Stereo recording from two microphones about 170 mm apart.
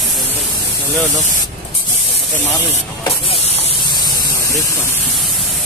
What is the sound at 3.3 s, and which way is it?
Spray, 35° left (ahead or behind).